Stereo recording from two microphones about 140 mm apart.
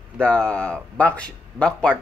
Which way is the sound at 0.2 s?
10° left (ahead or behind).